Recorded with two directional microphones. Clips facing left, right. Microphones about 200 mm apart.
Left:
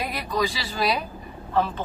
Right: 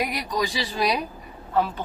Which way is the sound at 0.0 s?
15° right (ahead or behind).